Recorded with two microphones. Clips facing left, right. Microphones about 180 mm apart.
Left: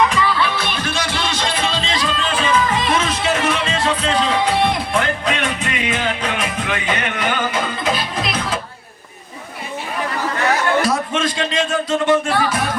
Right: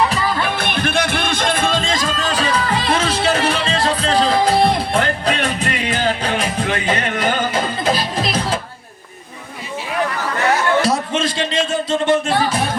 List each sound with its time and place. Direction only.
0.0 s music: 35° right (ahead or behind)
10.8 s a sound: 30° right (ahead or behind)
11.9 s music: 25° right (ahead or behind)